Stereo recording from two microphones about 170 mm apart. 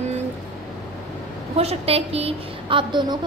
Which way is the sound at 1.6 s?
35° right (ahead or behind).